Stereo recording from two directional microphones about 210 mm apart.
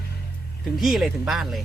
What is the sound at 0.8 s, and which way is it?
Speech, centre (ahead or behind).